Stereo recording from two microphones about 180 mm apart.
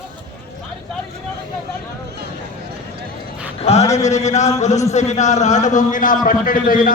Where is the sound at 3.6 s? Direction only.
35° left (ahead or behind).